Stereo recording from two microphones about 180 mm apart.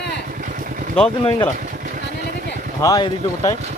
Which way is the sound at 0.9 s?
30° left (ahead or behind).